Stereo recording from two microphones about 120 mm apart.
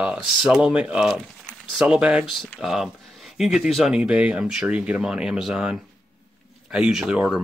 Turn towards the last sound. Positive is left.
turn(degrees=-5)  # may be behind; listen again after turning